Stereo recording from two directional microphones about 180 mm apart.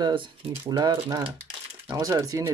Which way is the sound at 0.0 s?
25° right (ahead or behind).